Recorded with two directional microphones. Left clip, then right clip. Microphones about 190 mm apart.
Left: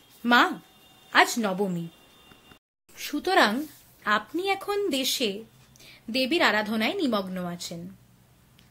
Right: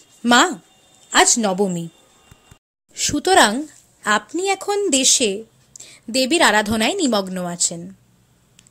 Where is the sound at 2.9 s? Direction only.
45° right (ahead or behind).